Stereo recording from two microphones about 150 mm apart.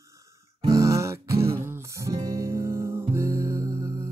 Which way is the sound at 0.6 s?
20° right (ahead or behind).